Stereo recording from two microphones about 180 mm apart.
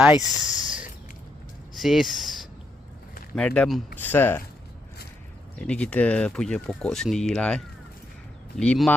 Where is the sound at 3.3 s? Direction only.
5° left (ahead or behind).